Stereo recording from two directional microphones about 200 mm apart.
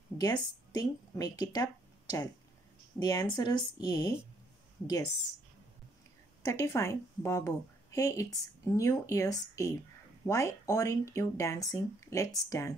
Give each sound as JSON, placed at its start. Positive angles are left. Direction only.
{"t": 0.2, "sound": "speech", "side_deg": 20}
{"t": 6.4, "sound": "a woman's voice", "side_deg": 15}